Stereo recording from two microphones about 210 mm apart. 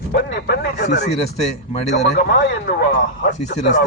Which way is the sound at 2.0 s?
55° left (ahead or behind).